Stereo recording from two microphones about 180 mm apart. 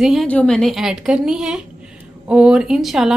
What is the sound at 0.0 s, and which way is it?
A woman's voice, centre (ahead or behind).